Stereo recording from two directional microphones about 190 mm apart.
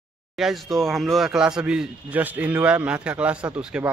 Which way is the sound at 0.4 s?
Centre (ahead or behind).